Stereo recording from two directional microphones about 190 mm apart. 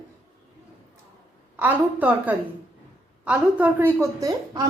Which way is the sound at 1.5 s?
10° right (ahead or behind).